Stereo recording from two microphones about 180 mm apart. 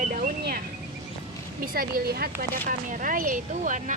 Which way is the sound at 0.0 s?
45° right (ahead or behind).